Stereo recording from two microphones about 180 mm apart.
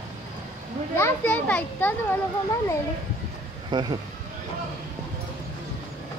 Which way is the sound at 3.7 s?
25° right (ahead or behind).